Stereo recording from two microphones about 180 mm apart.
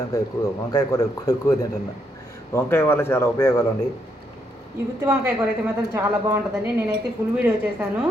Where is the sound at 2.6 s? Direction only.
10° left (ahead or behind).